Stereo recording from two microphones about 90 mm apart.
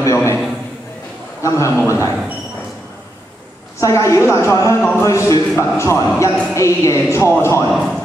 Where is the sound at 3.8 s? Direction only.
35° left (ahead or behind).